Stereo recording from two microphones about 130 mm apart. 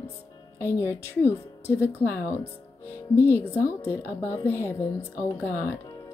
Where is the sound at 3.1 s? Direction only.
20° left (ahead or behind).